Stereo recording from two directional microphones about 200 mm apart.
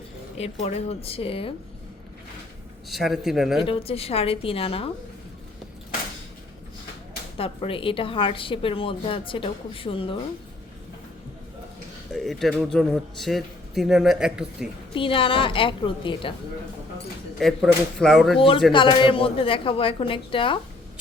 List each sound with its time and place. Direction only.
0.6 s a woman's voice: 30° left (ahead or behind)
2.9 s a man's voice: centre (ahead or behind)
3.6 s a woman's voice: 25° left (ahead or behind)
7.3 s a woman's voice: 30° left (ahead or behind)
12.1 s a man's voice: centre (ahead or behind)
14.9 s a woman's voice: 25° left (ahead or behind)
17.4 s a man's voice: centre (ahead or behind)
18.3 s a woman's voice: 25° left (ahead or behind)